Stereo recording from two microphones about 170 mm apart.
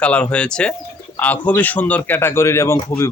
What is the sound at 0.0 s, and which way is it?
Speech, 5° left (ahead or behind).